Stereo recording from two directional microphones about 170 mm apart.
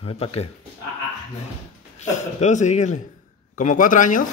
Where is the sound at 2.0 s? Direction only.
45° left (ahead or behind).